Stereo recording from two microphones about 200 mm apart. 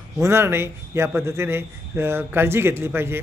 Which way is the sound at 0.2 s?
10° right (ahead or behind).